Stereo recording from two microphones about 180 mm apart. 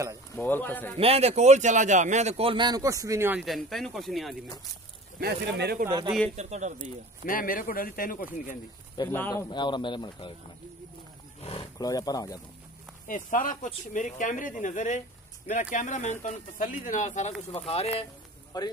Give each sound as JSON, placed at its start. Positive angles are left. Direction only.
{"t": 0.4, "sound": "speech", "side_deg": 10}
{"t": 0.9, "sound": "a man's voice", "side_deg": -35}
{"t": 3.4, "sound": "speech", "side_deg": 0}
{"t": 5.2, "sound": "speech", "side_deg": -60}
{"t": 5.9, "sound": "speech", "side_deg": -25}
{"t": 6.3, "sound": "a man's voice", "side_deg": -40}
{"t": 7.2, "sound": "speech", "side_deg": 50}
{"t": 9.1, "sound": "speech", "side_deg": 10}
{"t": 9.5, "sound": "speech", "side_deg": 25}
{"t": 11.4, "sound": "roaring cats", "side_deg": 30}
{"t": 11.8, "sound": "speech", "side_deg": 20}
{"t": 13.0, "sound": "speech", "side_deg": 50}
{"t": 18.5, "sound": "speech", "side_deg": 25}